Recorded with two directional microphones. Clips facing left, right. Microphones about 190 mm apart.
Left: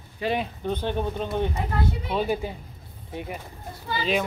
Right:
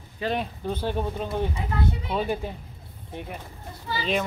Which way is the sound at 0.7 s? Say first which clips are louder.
Left 1 dB; 5° right (ahead or behind).